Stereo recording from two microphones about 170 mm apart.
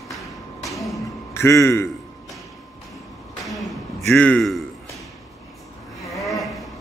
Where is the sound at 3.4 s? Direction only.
Centre (ahead or behind).